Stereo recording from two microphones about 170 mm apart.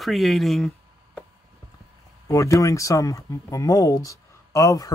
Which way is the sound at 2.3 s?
20° left (ahead or behind).